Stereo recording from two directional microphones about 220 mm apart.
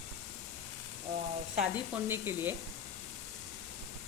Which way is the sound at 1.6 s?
5° right (ahead or behind).